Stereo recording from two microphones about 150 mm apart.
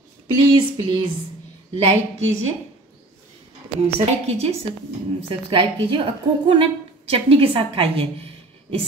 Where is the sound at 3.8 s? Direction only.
45° right (ahead or behind).